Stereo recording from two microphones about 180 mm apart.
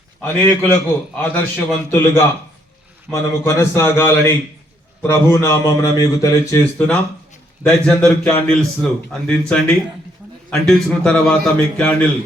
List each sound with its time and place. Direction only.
0.2 s a man's voice: 10° left (ahead or behind)